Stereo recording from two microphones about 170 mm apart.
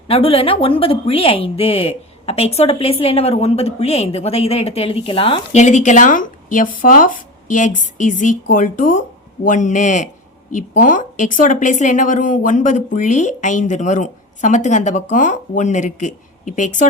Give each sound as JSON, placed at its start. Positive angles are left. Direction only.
{"t": 0.1, "sound": "a woman's voice", "side_deg": 35}